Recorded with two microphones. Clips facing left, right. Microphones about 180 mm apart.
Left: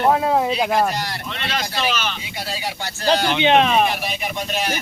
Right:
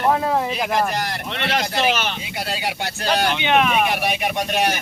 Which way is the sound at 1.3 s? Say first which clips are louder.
Right 6 dB; 65° right (ahead or behind).